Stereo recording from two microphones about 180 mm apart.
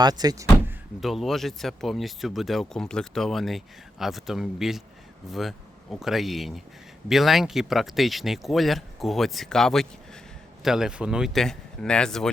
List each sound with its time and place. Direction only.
0.0 s speech: 20° right (ahead or behind)
1.0 s speech: centre (ahead or behind)